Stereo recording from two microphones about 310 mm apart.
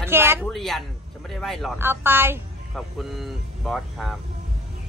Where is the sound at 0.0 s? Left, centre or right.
Centre.